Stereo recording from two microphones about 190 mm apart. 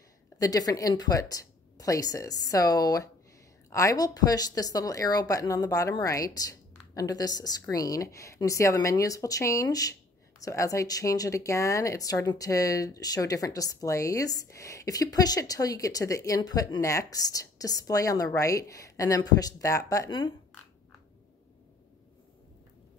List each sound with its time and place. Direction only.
0.4 s a woman's voice: 20° left (ahead or behind)